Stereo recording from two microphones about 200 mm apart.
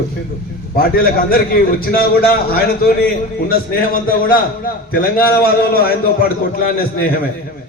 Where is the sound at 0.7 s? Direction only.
45° left (ahead or behind).